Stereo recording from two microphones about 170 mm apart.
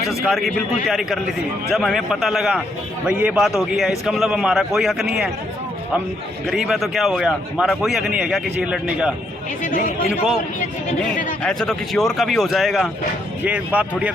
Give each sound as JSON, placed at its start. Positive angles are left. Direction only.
{"t": 0.1, "sound": "a man's voice", "side_deg": 0}
{"t": 6.5, "sound": "a man's voice", "side_deg": 0}
{"t": 9.6, "sound": "speech", "side_deg": 55}
{"t": 11.4, "sound": "a man's voice", "side_deg": 5}